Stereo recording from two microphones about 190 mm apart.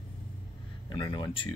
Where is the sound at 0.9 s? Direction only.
25° left (ahead or behind).